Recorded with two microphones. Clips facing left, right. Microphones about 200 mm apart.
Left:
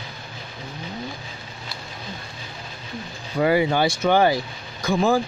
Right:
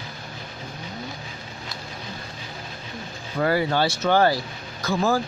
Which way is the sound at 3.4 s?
15° left (ahead or behind).